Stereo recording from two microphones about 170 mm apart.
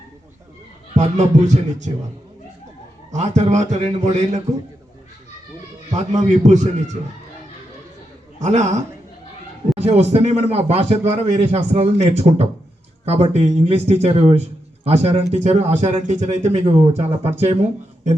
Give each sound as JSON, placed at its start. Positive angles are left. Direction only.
{"t": 0.9, "sound": "a man's voice", "side_deg": -45}
{"t": 3.1, "sound": "a man's voice", "side_deg": -45}
{"t": 5.9, "sound": "a man's voice", "side_deg": -45}
{"t": 8.4, "sound": "a man's voice", "side_deg": -45}